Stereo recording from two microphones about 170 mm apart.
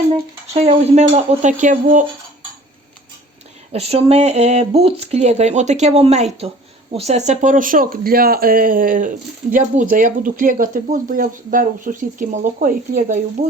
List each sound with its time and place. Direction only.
0.1 s speech: 35° right (ahead or behind)
3.7 s speech: 35° right (ahead or behind)
13.4 s speech: 35° right (ahead or behind)